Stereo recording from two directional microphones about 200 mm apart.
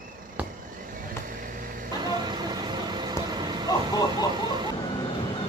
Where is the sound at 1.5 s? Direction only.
45° right (ahead or behind).